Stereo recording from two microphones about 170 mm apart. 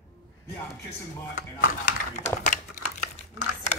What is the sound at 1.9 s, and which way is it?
Speech, 45° left (ahead or behind).